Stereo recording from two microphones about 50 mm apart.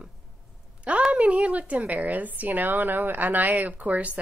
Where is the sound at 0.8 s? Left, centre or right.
Right.